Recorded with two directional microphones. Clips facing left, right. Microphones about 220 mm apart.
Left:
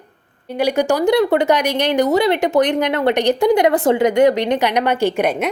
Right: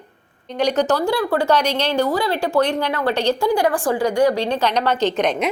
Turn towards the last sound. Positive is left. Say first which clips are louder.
# left 2 dB
turn(degrees=10)  # may be behind; listen again after turning